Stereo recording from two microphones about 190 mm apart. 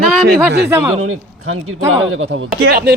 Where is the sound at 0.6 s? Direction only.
10° right (ahead or behind).